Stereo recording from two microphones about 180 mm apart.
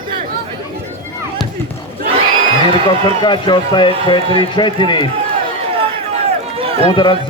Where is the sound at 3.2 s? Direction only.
25° left (ahead or behind).